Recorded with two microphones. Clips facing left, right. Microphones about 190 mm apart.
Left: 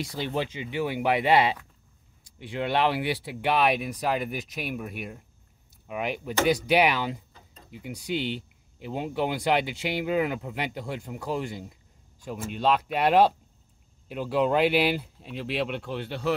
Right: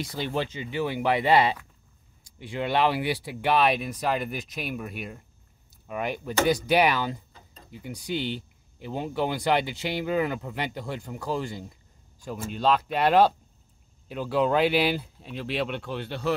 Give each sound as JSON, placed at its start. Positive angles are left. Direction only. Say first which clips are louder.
{"t": 0.0, "sound": "speech", "louder": "even", "side_deg": 10}
{"t": 3.3, "sound": "speech", "louder": "right 1 dB", "side_deg": 15}
{"t": 8.1, "sound": "speech", "louder": "even", "side_deg": 85}
{"t": 8.9, "sound": "speech", "louder": "even", "side_deg": 5}
{"t": 14.3, "sound": "speech", "louder": "even", "side_deg": 0}